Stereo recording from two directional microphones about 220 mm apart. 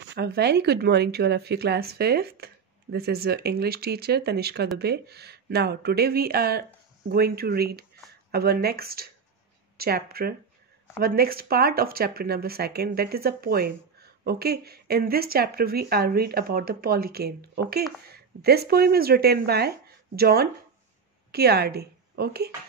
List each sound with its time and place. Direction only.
0.1 s a woman's voice: 50° right (ahead or behind)